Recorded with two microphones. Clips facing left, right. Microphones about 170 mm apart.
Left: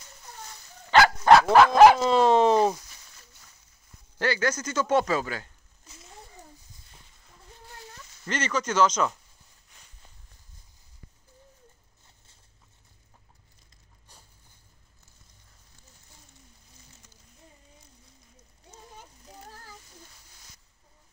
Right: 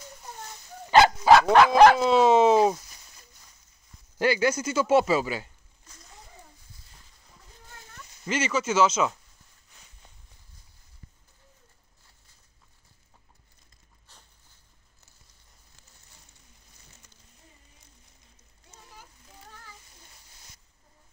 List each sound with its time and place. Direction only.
0.8 s dog: 20° right (ahead or behind)
1.2 s dog: centre (ahead or behind)
2.0 s speech: 5° right (ahead or behind)
4.2 s a man's voice: 10° right (ahead or behind)
8.3 s a man's voice: 10° right (ahead or behind)
19.2 s a sound: 40° left (ahead or behind)